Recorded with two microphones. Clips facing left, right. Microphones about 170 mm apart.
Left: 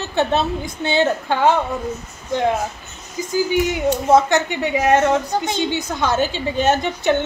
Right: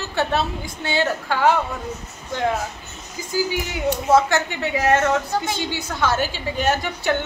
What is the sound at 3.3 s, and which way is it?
Speech, 20° left (ahead or behind).